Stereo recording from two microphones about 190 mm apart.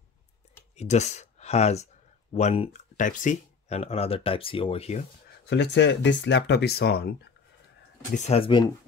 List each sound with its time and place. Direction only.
0.7 s speech: 35° left (ahead or behind)
5.5 s speech: 65° left (ahead or behind)
8.1 s speech: 35° left (ahead or behind)